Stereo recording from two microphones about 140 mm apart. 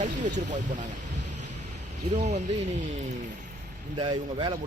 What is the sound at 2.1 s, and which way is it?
Speech, 55° right (ahead or behind).